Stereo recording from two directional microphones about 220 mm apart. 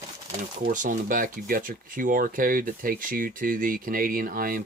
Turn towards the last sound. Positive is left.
turn(degrees=-40)  # may be behind; listen again after turning